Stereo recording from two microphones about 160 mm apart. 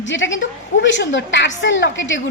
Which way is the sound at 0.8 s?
90° left.